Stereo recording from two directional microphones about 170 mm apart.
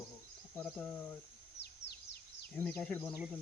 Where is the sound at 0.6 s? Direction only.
10° left (ahead or behind).